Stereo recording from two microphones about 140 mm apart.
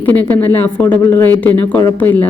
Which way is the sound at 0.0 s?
10° left (ahead or behind).